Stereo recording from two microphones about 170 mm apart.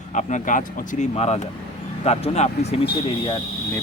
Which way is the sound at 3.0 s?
30° left (ahead or behind).